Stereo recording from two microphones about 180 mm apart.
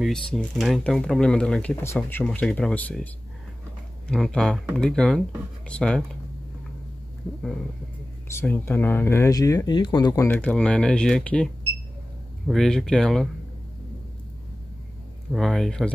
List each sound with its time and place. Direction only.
0.0 s speech: centre (ahead or behind)
4.1 s speech: 5° left (ahead or behind)
8.3 s speech: 10° left (ahead or behind)
10.2 s speech: 10° left (ahead or behind)
15.3 s speech: centre (ahead or behind)